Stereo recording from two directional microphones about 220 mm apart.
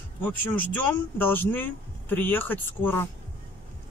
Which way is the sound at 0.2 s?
10° left (ahead or behind).